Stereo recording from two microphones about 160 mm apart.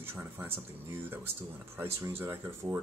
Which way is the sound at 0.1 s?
15° right (ahead or behind).